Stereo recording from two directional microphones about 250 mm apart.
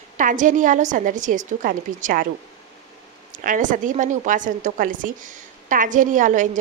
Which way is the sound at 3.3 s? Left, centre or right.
Right.